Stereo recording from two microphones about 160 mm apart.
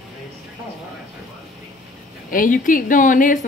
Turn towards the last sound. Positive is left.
turn(degrees=55)  # may be behind; listen again after turning